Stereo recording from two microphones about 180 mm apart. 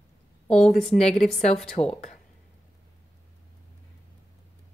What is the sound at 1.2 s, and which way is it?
Speech, 40° left (ahead or behind).